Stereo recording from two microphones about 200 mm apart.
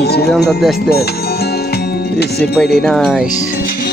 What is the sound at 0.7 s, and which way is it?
Music, 50° left (ahead or behind).